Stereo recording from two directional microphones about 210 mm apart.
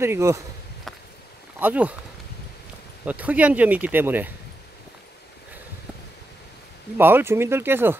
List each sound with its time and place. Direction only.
0.0 s speech: 15° right (ahead or behind)
1.6 s speech: 5° right (ahead or behind)
3.1 s speech: 5° right (ahead or behind)
7.0 s speech: 10° right (ahead or behind)